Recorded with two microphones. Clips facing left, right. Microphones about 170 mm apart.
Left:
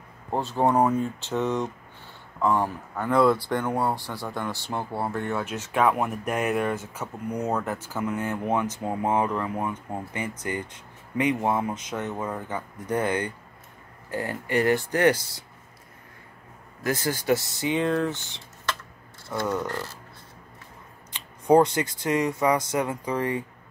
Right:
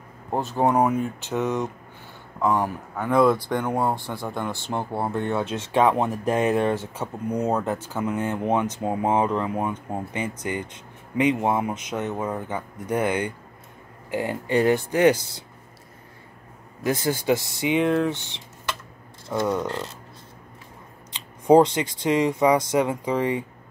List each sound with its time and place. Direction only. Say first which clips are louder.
0.3 s speech: right 1 dB; 15° right (ahead or behind)
16.8 s speech: right 3 dB; 15° right (ahead or behind)
21.1 s speech: right 3 dB; 20° right (ahead or behind)